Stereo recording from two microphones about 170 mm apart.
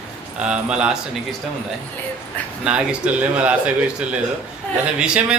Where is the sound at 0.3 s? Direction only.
5° right (ahead or behind).